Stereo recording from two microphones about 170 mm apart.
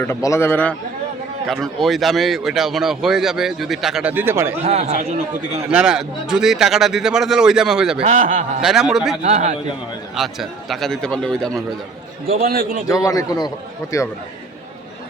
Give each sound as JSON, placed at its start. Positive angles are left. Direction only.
{"t": 0.0, "sound": "a man's voice", "side_deg": 15}
{"t": 4.6, "sound": "speech", "side_deg": -40}
{"t": 5.6, "sound": "speech", "side_deg": -5}
{"t": 8.0, "sound": "a man's voice", "side_deg": -50}
{"t": 8.6, "sound": "speech", "side_deg": -5}
{"t": 9.2, "sound": "speech", "side_deg": -40}
{"t": 10.2, "sound": "speech", "side_deg": 0}
{"t": 12.4, "sound": "a man's voice", "side_deg": -60}
{"t": 12.9, "sound": "a man's voice", "side_deg": 20}